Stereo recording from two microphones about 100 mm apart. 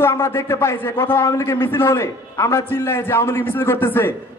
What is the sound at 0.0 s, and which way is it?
A man's voice, 25° left (ahead or behind).